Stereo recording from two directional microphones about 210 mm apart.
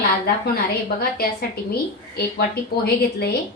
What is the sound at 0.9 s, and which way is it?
Speech, 45° left (ahead or behind).